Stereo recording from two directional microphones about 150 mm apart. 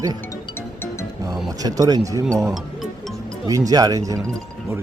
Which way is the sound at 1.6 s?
25° right (ahead or behind).